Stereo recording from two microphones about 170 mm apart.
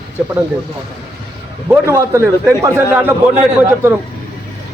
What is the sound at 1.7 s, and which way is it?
A man's voice, 15° right (ahead or behind).